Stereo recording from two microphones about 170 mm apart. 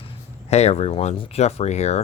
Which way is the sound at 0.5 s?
40° left (ahead or behind).